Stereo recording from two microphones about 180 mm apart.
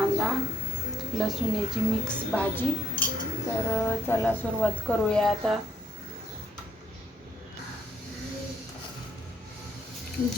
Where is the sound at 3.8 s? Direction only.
10° left (ahead or behind).